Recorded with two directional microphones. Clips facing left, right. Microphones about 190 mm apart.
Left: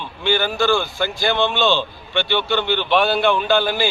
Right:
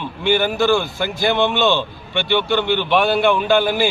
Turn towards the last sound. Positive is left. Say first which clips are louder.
# right 2 dB
turn(degrees=-15)  # may be behind; listen again after turning